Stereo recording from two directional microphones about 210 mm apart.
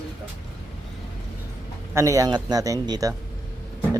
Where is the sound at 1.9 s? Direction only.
15° right (ahead or behind).